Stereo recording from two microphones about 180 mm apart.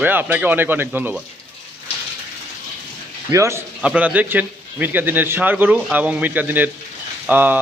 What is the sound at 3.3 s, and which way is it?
A man's voice, 15° right (ahead or behind).